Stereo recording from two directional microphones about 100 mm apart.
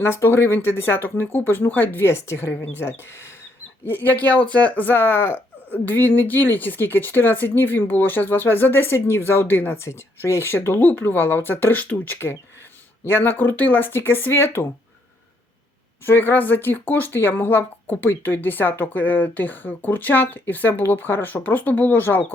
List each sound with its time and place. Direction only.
0.0 s speech: 25° left (ahead or behind)
16.0 s speech: 20° left (ahead or behind)